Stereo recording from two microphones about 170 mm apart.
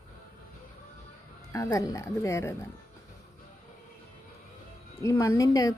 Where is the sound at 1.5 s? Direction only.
20° left (ahead or behind).